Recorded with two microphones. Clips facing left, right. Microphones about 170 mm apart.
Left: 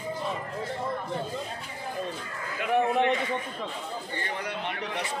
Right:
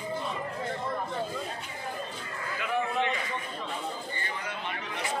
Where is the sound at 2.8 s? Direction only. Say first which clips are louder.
Left 6 dB; 55° left (ahead or behind).